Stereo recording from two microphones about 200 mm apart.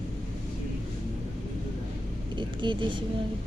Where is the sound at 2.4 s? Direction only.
25° right (ahead or behind).